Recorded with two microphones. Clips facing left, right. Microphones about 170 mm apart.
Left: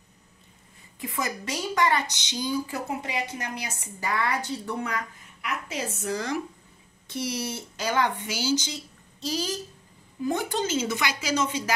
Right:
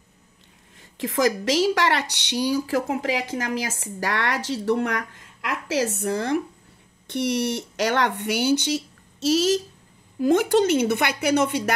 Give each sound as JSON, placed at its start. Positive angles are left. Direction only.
{"t": 0.9, "sound": "speech", "side_deg": -90}
{"t": 7.1, "sound": "speech", "side_deg": -65}
{"t": 10.1, "sound": "a woman's voice", "side_deg": -90}